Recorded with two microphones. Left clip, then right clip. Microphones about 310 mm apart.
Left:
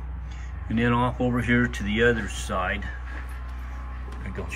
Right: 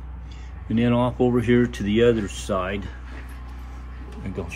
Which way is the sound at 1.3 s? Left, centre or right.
Centre.